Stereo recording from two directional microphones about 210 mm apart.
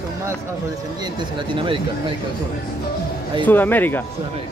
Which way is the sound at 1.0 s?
20° right (ahead or behind).